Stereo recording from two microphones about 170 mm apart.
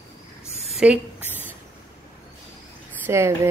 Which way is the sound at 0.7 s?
5° right (ahead or behind).